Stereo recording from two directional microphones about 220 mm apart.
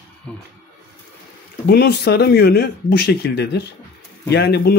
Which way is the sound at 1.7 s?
45° left (ahead or behind).